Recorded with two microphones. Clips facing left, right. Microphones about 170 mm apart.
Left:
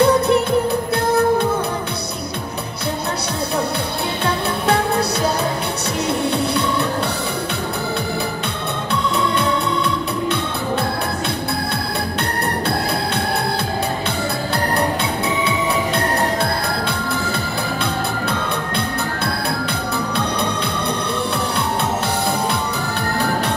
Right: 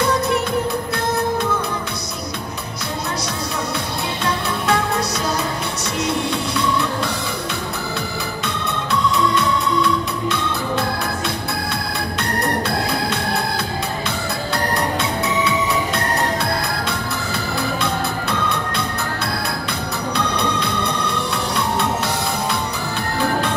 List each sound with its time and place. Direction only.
0.0 s music: 30° left (ahead or behind)
6.3 s music: 60° left (ahead or behind)